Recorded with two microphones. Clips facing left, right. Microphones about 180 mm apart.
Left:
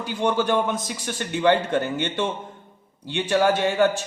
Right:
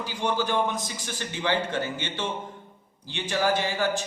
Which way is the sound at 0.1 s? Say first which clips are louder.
Left 6 dB; 55° left (ahead or behind).